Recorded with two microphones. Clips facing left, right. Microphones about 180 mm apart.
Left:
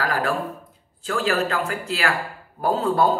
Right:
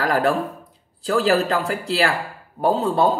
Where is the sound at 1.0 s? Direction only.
35° right (ahead or behind).